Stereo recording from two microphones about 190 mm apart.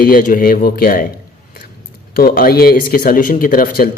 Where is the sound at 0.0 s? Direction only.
45° left (ahead or behind).